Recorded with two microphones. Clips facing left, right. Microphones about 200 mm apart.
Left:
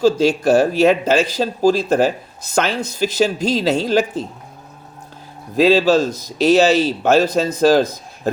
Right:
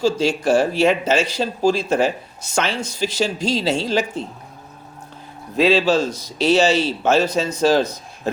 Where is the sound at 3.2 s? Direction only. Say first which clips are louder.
Left 3 dB; 40° left (ahead or behind).